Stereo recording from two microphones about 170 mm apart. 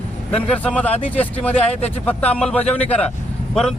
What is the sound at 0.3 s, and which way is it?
Speech, 5° left (ahead or behind).